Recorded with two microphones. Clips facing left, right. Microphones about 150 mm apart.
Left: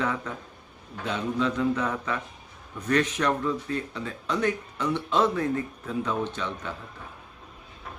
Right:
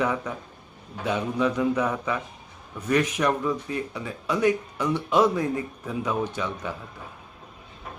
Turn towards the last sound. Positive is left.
turn(degrees=-10)  # may be behind; listen again after turning